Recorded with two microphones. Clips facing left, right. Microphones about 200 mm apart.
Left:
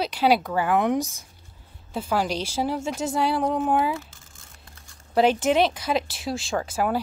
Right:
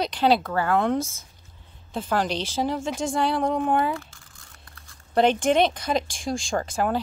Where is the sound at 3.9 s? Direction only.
20° left (ahead or behind).